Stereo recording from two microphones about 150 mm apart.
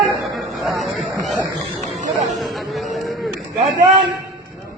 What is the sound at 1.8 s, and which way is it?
Chatter, 50° right (ahead or behind).